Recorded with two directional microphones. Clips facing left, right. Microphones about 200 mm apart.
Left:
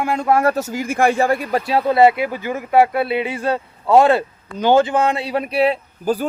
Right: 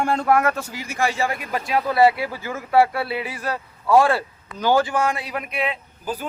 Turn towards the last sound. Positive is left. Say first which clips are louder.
# left 9 dB
turn(degrees=40)  # may be behind; listen again after turning